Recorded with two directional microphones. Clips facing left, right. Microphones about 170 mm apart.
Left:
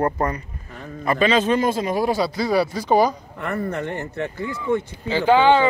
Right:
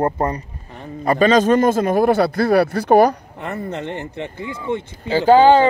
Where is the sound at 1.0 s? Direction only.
40° right (ahead or behind); by 3.1 s 60° right (ahead or behind).